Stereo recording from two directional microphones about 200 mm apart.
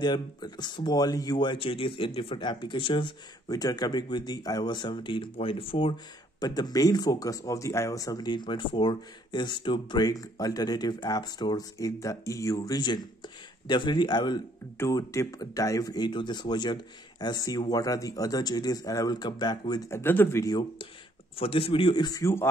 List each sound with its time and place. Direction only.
0.0 s speech: 20° left (ahead or behind)